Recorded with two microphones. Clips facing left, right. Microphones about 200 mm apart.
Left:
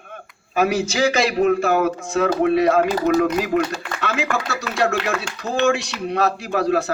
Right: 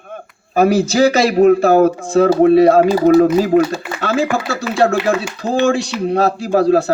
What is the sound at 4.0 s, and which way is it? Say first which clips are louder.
Speech: right 7 dB; 35° right (ahead or behind).